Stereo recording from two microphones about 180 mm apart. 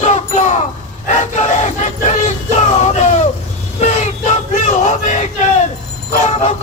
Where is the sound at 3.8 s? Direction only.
40° left (ahead or behind).